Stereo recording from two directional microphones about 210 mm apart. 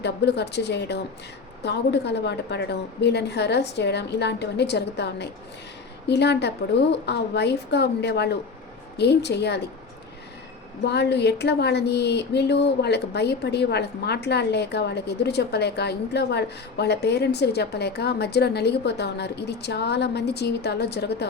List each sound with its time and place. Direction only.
0.0 s a woman's voice: 55° left (ahead or behind)
10.8 s a woman's voice: 55° left (ahead or behind)